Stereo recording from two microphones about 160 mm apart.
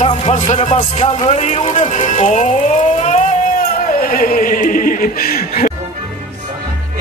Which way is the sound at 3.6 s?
60° left (ahead or behind).